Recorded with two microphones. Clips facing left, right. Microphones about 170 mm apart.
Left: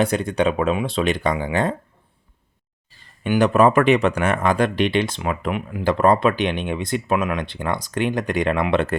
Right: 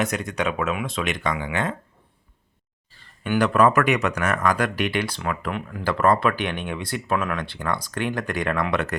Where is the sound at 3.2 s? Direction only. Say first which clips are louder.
Left 3 dB; 20° left (ahead or behind).